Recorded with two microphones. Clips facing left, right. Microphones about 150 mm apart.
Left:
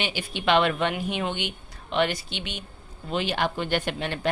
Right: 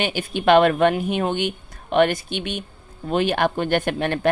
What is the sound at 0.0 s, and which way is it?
A woman's voice, 50° right (ahead or behind).